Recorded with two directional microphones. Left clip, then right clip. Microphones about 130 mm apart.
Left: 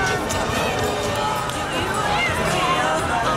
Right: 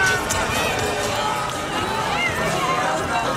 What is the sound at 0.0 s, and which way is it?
Music, 5° right (ahead or behind).